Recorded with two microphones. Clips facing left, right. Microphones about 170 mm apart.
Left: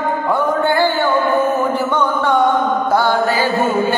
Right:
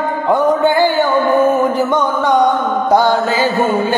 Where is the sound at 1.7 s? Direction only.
15° right (ahead or behind).